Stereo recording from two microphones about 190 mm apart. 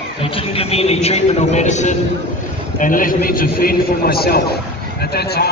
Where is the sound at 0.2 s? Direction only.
30° left (ahead or behind).